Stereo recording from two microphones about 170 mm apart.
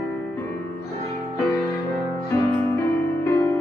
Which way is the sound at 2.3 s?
15° left (ahead or behind).